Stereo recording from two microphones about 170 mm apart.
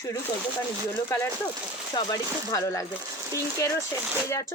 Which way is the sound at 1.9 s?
20° left (ahead or behind).